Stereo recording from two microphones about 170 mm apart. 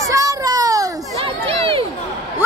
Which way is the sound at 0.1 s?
20° right (ahead or behind).